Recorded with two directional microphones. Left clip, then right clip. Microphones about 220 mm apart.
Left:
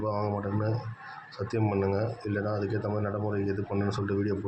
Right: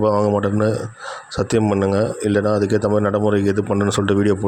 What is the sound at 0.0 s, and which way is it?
A man's voice, 45° right (ahead or behind).